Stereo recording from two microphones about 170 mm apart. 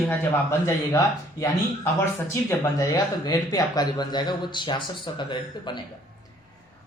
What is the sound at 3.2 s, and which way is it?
Speech, 25° left (ahead or behind).